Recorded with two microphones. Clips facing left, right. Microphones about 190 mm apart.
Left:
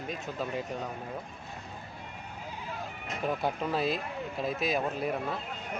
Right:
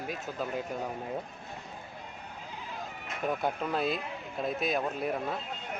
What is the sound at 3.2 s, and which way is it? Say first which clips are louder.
Speech: even; centre (ahead or behind).